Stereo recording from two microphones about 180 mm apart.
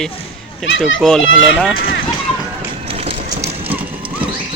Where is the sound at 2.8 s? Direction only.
35° right (ahead or behind).